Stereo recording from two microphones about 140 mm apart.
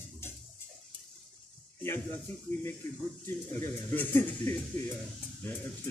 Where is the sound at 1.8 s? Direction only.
15° left (ahead or behind).